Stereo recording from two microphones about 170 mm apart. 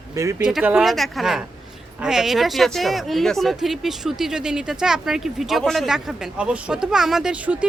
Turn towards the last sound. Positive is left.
turn(degrees=-5)  # may be behind; listen again after turning